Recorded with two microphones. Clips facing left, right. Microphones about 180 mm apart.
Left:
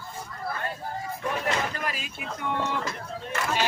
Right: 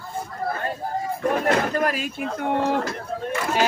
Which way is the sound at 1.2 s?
45° right (ahead or behind).